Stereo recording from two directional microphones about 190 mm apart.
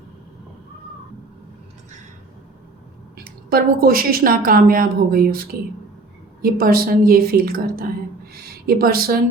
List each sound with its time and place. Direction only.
3.5 s a woman's voice: 50° right (ahead or behind)